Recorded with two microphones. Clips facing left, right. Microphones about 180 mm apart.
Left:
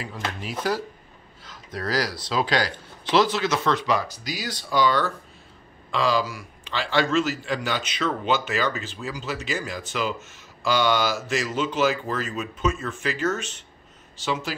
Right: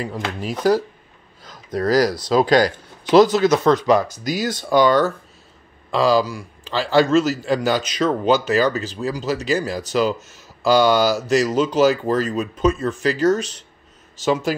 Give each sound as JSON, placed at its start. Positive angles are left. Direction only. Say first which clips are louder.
{"t": 0.0, "sound": "a man's voice", "louder": "right 6 dB", "side_deg": -40}